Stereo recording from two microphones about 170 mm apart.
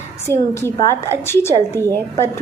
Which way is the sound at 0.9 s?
15° left (ahead or behind).